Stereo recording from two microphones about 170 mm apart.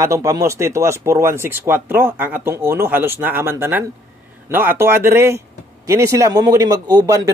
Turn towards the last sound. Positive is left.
turn(degrees=-25)  # may be behind; listen again after turning